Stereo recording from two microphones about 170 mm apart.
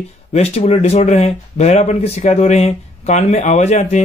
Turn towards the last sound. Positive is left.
turn(degrees=40)  # may be behind; listen again after turning